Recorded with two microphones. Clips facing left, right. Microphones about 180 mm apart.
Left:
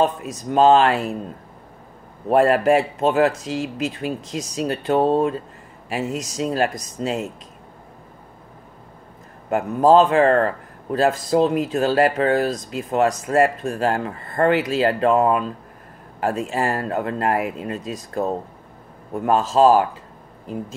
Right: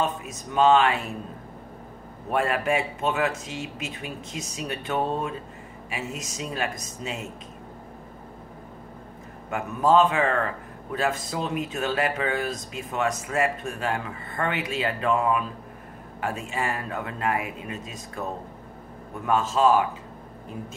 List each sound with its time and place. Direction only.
0.6 s speech: 35° left (ahead or behind)
2.2 s speech: 40° left (ahead or behind)
9.5 s speech: 35° left (ahead or behind)
16.4 s speech: 40° left (ahead or behind)